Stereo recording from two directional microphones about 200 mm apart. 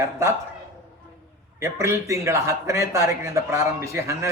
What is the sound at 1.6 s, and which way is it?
A man's voice, 15° right (ahead or behind).